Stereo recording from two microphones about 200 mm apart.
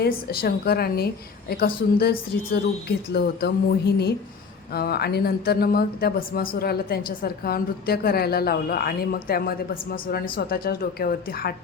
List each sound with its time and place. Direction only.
0.0 s speech: 50° left (ahead or behind)